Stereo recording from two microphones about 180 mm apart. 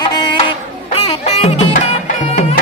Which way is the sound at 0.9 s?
35° left (ahead or behind).